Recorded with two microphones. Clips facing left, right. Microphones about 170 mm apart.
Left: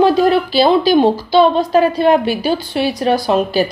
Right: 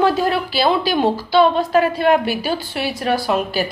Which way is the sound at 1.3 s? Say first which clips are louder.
Left 3 dB; 35° left (ahead or behind).